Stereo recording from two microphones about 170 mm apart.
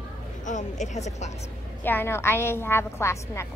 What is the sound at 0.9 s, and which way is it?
Speech, 40° left (ahead or behind).